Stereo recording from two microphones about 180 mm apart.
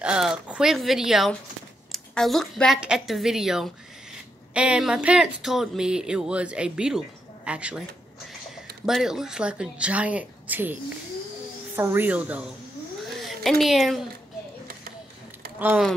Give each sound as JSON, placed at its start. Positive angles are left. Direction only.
{"t": 0.0, "sound": "a woman's voice", "side_deg": -5}
{"t": 15.6, "sound": "speech", "side_deg": -10}